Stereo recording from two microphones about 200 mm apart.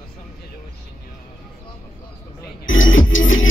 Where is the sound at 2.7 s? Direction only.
75° left (ahead or behind).